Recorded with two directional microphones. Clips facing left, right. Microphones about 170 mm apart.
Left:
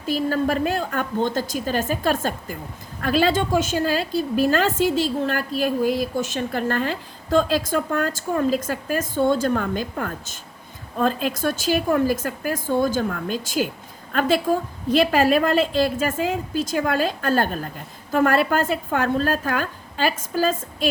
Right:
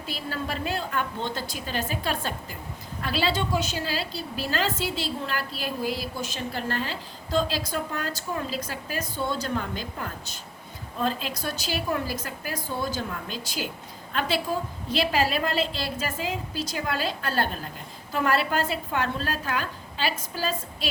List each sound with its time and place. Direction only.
0.0 s a woman's voice: 45° left (ahead or behind)